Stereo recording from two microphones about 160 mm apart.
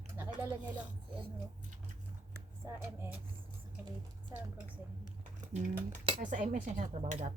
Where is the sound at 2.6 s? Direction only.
15° right (ahead or behind).